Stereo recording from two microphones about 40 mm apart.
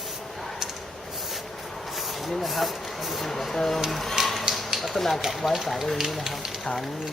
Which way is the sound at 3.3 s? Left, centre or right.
Centre.